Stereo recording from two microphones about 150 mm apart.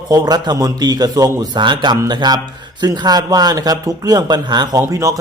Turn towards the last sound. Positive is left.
turn(degrees=-20)  # may be behind; listen again after turning